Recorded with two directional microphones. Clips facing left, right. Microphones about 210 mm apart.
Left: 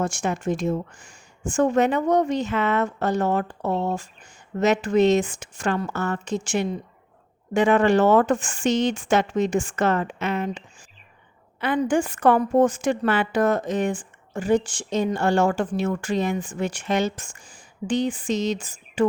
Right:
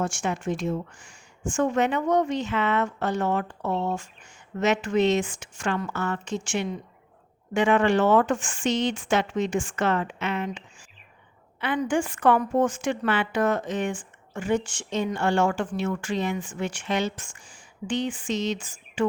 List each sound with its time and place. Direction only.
0.0 s a woman's voice: 40° left (ahead or behind)
11.6 s a woman's voice: 40° left (ahead or behind)